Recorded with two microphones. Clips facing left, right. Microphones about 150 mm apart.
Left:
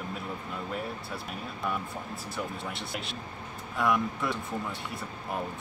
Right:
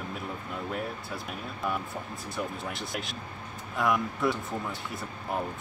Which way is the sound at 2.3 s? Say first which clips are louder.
Right 2 dB; centre (ahead or behind).